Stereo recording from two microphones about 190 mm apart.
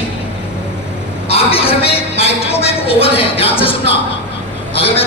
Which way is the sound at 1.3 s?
30° left (ahead or behind).